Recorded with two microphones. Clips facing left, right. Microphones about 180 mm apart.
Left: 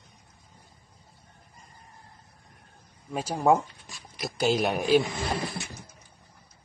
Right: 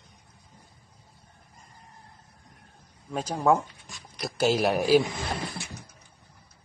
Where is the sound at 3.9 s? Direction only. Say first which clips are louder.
Even; centre (ahead or behind).